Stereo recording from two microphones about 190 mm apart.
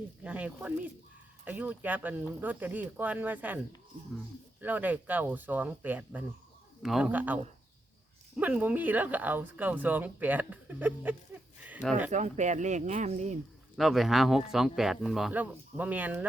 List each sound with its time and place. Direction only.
0.2 s speech: 5° right (ahead or behind)
4.6 s speech: 10° right (ahead or behind)
8.4 s speech: 10° right (ahead or behind)
11.6 s a sound: 10° right (ahead or behind)
12.1 s speech: 40° right (ahead or behind)
13.7 s speech: centre (ahead or behind)